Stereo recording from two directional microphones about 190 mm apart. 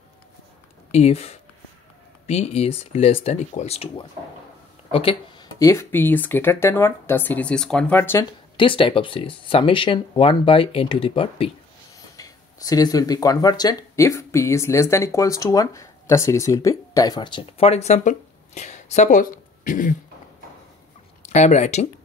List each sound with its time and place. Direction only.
0.9 s speech: 35° left (ahead or behind)
5.6 s speech: 15° left (ahead or behind)
8.5 s speech: 30° left (ahead or behind)
12.2 s speech: 20° left (ahead or behind); by 20.0 s 45° left (ahead or behind)
21.2 s speech: 35° left (ahead or behind)